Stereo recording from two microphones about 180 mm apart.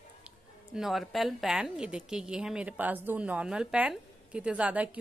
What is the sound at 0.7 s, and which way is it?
A woman's voice, centre (ahead or behind).